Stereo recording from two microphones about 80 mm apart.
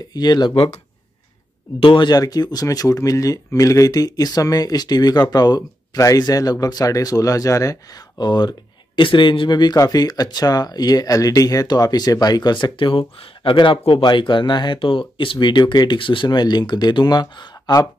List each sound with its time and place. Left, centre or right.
0.1 s speech: left
1.9 s speech: left
2.1 s speech: left
8.2 s speech: left
9.8 s speech: left